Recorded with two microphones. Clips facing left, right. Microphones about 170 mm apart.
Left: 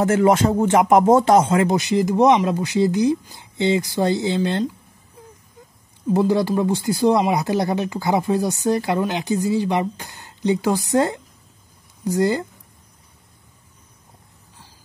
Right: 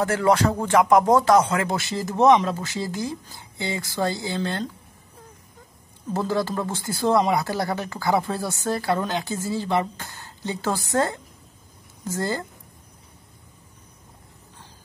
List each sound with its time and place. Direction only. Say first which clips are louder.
0.0 s speech: left 4 dB; 20° left (ahead or behind)
6.1 s speech: left 6 dB; 15° left (ahead or behind)